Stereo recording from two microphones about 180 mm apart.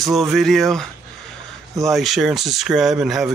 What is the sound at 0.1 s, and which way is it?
Speech, centre (ahead or behind).